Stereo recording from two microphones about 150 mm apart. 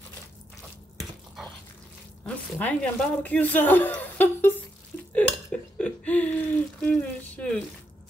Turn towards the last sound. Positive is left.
turn(degrees=10)  # may be behind; listen again after turning